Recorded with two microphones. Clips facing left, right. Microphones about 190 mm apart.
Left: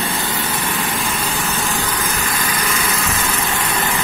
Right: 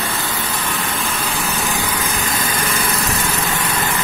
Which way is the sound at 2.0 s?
30° right (ahead or behind).